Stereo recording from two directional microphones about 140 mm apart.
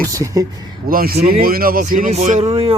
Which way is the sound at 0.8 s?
90° right.